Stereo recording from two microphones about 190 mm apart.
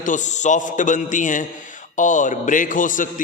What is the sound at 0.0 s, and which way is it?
A man's voice, 40° left (ahead or behind).